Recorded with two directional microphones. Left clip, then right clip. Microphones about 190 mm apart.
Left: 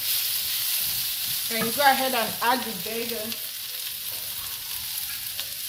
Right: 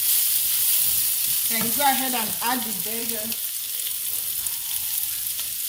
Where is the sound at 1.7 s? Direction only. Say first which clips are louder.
Left 2 dB; 15° left (ahead or behind).